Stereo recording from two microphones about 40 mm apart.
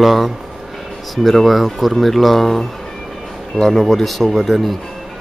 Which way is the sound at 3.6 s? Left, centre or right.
Centre.